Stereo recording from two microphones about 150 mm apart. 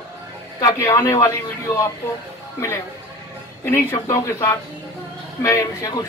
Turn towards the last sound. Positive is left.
turn(degrees=20)  # may be behind; listen again after turning